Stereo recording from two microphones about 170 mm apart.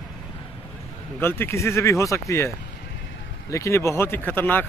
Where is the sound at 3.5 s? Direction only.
15° left (ahead or behind).